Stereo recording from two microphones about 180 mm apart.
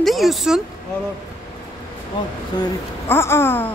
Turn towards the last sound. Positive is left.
turn(degrees=10)  # may be behind; listen again after turning